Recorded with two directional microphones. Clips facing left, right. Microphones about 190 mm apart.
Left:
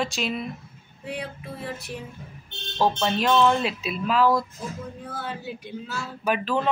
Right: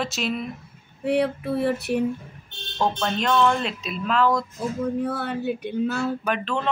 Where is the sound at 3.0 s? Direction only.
5° left (ahead or behind).